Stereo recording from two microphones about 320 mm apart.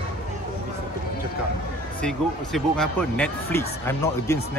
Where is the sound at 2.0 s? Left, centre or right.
Centre.